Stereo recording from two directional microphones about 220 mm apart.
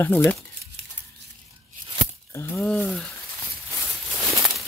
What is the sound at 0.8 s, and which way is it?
Crumpling, 50° right (ahead or behind).